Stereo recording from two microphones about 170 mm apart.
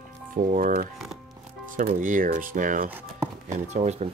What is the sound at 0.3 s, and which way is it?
Speech, 50° right (ahead or behind).